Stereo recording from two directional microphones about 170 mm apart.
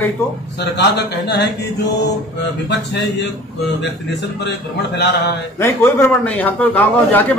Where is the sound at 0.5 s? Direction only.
80° left.